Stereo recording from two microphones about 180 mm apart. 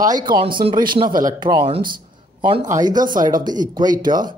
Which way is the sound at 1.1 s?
50° right (ahead or behind).